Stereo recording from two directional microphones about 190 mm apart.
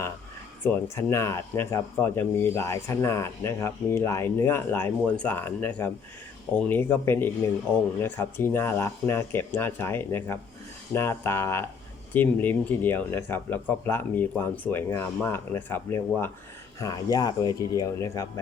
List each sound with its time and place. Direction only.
0.6 s speech: 15° left (ahead or behind)